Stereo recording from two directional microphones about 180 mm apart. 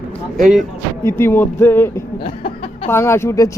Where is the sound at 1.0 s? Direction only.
15° left (ahead or behind).